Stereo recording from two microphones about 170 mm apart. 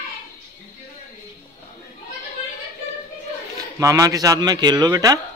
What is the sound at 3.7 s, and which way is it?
A man's voice, 20° right (ahead or behind).